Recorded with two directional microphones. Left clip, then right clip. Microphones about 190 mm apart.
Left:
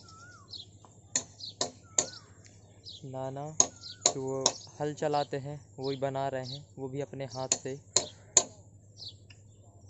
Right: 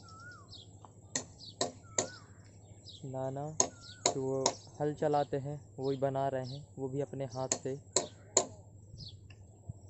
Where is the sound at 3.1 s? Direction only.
5° left (ahead or behind).